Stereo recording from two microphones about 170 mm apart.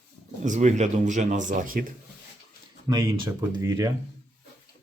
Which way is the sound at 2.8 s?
25° right (ahead or behind).